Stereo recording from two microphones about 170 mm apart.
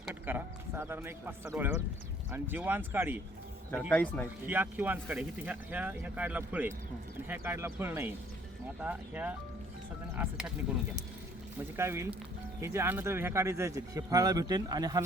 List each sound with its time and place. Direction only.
0.0 s a sound: 10° right (ahead or behind)
2.3 s speech: 10° right (ahead or behind)
3.8 s speech: 5° left (ahead or behind)
4.4 s speech: 10° right (ahead or behind)
11.8 s speech: 15° right (ahead or behind)